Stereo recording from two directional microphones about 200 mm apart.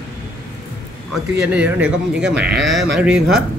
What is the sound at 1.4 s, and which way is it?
A man's voice, 5° right (ahead or behind).